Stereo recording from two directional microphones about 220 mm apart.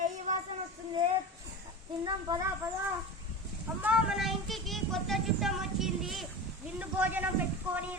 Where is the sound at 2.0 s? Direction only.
20° right (ahead or behind).